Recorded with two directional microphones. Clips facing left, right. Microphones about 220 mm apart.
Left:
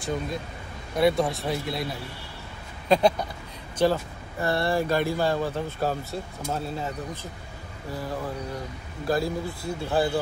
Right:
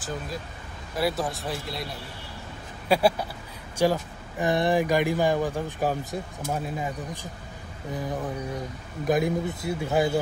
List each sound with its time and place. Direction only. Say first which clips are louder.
0.0 s speech: left 4 dB; centre (ahead or behind)
7.9 s a man's voice: right 1 dB; 20° right (ahead or behind)